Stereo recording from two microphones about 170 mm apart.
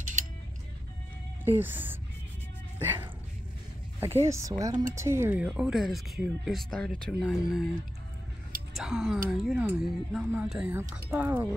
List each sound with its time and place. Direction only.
1.4 s speech: 10° right (ahead or behind)
2.8 s a sound: 10° right (ahead or behind)
4.0 s speech: 15° right (ahead or behind)
5.6 s speech: centre (ahead or behind)
8.7 s speech: centre (ahead or behind)